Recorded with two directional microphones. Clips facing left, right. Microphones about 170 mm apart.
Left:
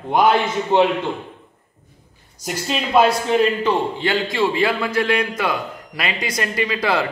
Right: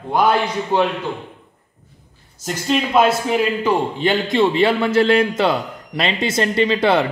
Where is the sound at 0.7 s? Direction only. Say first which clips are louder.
Left 2 dB; 25° left (ahead or behind).